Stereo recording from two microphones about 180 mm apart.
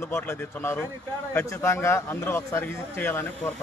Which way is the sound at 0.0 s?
15° left (ahead or behind).